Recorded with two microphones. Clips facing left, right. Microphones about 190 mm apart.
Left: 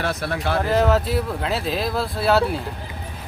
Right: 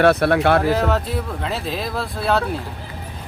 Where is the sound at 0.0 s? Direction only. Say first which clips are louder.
Right 10 dB; 65° right (ahead or behind).